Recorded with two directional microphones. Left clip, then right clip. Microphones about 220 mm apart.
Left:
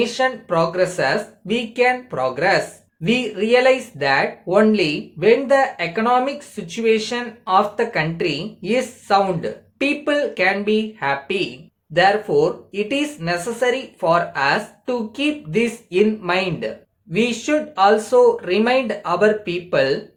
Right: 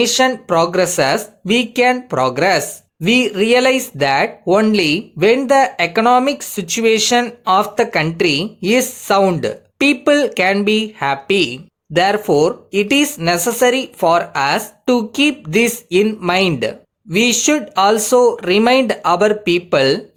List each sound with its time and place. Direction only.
0.0 s speech: 50° right (ahead or behind)